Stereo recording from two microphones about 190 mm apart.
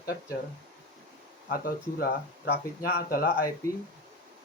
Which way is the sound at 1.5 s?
50° left (ahead or behind).